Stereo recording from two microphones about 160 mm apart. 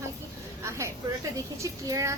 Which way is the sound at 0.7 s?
20° right (ahead or behind).